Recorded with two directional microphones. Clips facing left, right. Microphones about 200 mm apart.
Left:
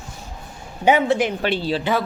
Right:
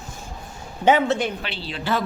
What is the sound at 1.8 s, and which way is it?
Speech, 10° left (ahead or behind).